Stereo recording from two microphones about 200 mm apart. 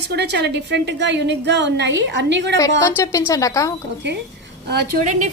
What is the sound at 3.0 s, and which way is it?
Speech, 15° left (ahead or behind).